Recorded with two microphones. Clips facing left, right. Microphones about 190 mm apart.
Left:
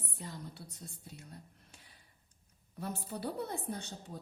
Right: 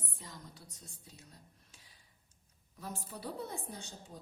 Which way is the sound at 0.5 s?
60° left (ahead or behind).